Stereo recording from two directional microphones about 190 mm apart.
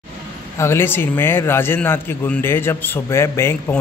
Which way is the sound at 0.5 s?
15° left (ahead or behind).